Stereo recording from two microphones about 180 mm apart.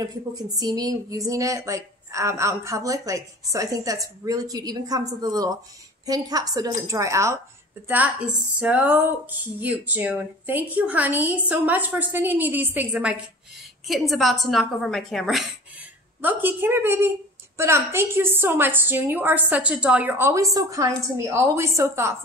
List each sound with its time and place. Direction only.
0.0 s a woman's voice: 20° right (ahead or behind); by 15.4 s centre (ahead or behind)
16.2 s speech: 10° right (ahead or behind)